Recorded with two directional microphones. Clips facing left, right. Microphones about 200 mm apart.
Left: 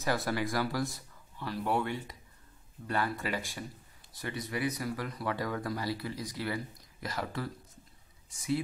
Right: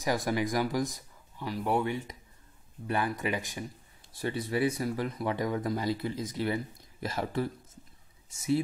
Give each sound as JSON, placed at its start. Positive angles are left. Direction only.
{"t": 0.0, "sound": "speech", "side_deg": -15}
{"t": 4.1, "sound": "speech", "side_deg": -30}